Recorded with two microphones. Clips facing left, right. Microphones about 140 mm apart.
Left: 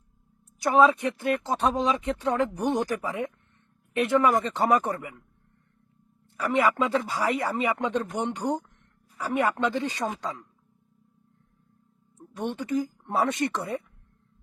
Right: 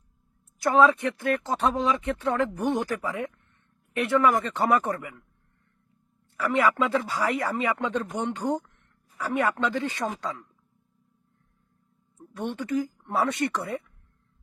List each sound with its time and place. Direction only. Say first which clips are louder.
0.6 s speech: even; 15° left (ahead or behind)
6.3 s a man's voice: even; 20° left (ahead or behind)
12.3 s speech: even; 15° left (ahead or behind)